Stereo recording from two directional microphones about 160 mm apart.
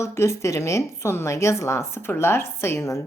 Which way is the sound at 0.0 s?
20° left (ahead or behind).